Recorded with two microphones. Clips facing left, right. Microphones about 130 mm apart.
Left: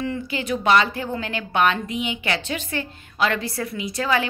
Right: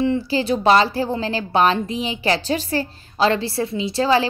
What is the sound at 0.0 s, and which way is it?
A woman's voice, 30° right (ahead or behind).